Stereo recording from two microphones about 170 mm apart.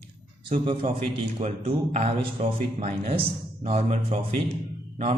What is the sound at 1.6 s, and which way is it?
Speech, 40° right (ahead or behind).